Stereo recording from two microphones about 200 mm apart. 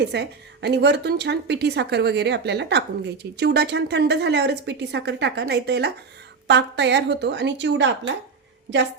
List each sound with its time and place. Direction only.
0.0 s a woman's voice: 55° right (ahead or behind)